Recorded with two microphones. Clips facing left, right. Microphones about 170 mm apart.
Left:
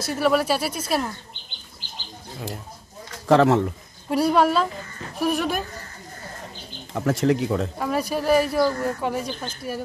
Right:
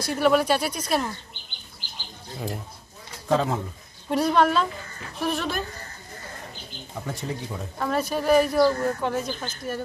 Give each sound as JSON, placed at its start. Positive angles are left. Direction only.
{"t": 0.0, "sound": "speech", "side_deg": 0}
{"t": 1.8, "sound": "bird", "side_deg": 20}
{"t": 3.3, "sound": "a man's voice", "side_deg": 75}
{"t": 4.1, "sound": "speech", "side_deg": 5}
{"t": 6.9, "sound": "speech", "side_deg": 90}
{"t": 7.8, "sound": "speech", "side_deg": 10}